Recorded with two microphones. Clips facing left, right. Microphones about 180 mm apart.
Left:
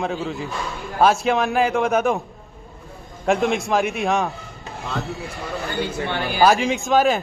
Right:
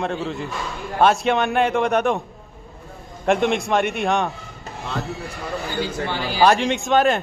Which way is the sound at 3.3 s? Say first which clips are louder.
Right 1 dB; centre (ahead or behind).